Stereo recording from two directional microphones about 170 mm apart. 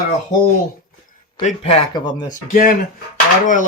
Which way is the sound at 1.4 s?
40° left (ahead or behind).